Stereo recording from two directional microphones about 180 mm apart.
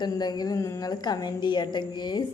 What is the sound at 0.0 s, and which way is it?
A woman's voice, 25° left (ahead or behind).